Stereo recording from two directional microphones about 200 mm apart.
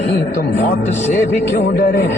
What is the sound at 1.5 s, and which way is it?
Speech, 50° left (ahead or behind).